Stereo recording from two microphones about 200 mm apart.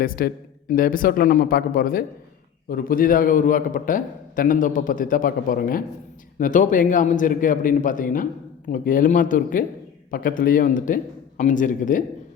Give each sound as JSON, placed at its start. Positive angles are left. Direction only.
{"t": 0.0, "sound": "a man's voice", "side_deg": 45}